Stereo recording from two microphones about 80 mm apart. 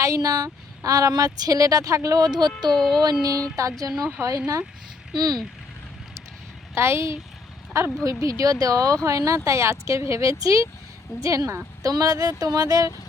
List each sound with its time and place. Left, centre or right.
0.0 s speech: right
2.6 s speech: centre
3.0 s speech: right
5.1 s speech: right
6.7 s a woman's voice: right